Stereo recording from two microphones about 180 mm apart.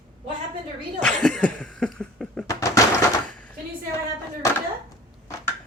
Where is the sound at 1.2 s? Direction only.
5° left (ahead or behind).